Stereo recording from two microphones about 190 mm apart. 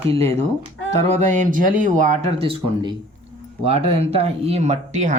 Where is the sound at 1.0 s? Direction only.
40° right (ahead or behind).